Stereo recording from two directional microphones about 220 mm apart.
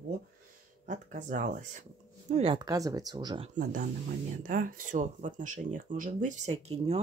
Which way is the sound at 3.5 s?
35° right (ahead or behind).